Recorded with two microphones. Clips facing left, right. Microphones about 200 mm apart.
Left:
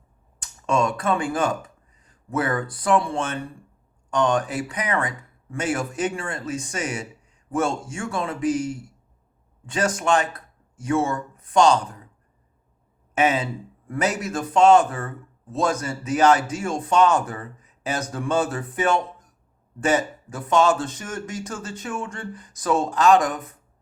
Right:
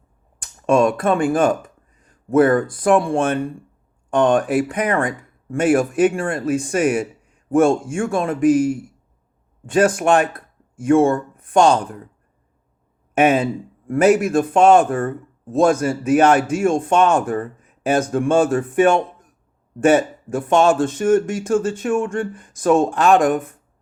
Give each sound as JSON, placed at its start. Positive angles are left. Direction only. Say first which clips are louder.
{"t": 0.3, "sound": "a man's voice", "louder": "right 7 dB", "side_deg": -55}
{"t": 13.1, "sound": "a man's voice", "louder": "right 6 dB", "side_deg": -55}